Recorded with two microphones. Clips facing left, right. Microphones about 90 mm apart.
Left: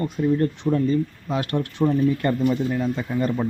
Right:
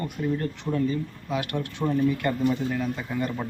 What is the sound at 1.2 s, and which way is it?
Speech, 30° left (ahead or behind).